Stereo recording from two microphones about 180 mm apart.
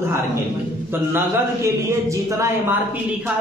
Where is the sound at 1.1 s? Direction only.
15° right (ahead or behind).